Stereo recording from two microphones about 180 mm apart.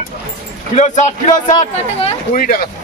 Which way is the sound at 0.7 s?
40° left (ahead or behind).